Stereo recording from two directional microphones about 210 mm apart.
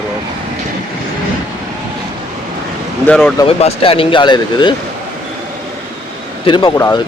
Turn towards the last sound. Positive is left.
turn(degrees=15)  # may be behind; listen again after turning